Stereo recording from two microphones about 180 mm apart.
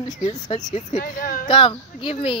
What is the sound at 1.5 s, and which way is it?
Speech, 30° left (ahead or behind).